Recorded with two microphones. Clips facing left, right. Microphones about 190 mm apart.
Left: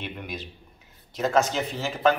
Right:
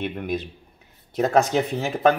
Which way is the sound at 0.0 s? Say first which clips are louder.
Right 8 dB; 50° right (ahead or behind).